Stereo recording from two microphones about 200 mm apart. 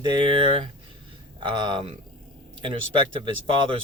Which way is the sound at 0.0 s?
25° right (ahead or behind).